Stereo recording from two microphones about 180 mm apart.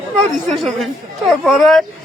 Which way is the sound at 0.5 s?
Centre (ahead or behind).